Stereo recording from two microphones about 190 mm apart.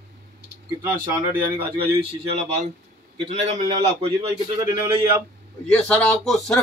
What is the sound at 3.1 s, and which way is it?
A man's voice, 35° right (ahead or behind).